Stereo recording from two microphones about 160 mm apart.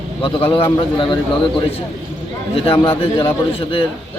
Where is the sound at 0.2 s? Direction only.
35° left (ahead or behind).